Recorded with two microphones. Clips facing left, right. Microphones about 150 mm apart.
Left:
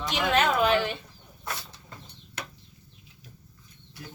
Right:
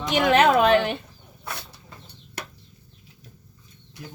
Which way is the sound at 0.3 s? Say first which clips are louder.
Right 6 dB; 75° right (ahead or behind).